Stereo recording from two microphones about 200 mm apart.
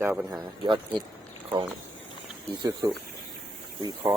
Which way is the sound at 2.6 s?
20° right (ahead or behind).